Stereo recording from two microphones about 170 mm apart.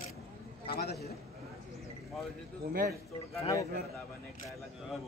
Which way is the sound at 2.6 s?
60° right (ahead or behind).